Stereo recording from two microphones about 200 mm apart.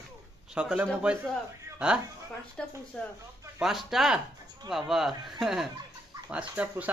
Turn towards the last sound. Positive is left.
turn(degrees=-10)  # may be behind; listen again after turning